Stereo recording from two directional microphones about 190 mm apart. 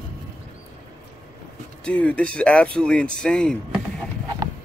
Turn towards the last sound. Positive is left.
turn(degrees=5)  # may be behind; listen again after turning